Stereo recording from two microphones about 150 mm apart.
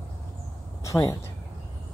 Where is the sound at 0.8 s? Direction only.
20° left (ahead or behind).